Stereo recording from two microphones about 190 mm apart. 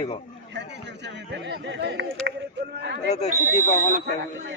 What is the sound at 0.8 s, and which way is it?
A man's voice, 65° right (ahead or behind).